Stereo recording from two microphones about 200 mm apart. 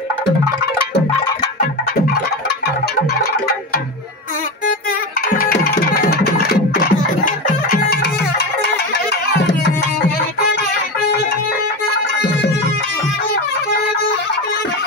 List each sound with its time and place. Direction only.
5.4 s music: 50° left (ahead or behind)